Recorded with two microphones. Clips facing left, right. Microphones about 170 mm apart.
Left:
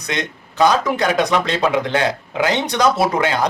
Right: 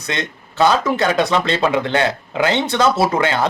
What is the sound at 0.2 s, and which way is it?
Speech, 15° left (ahead or behind).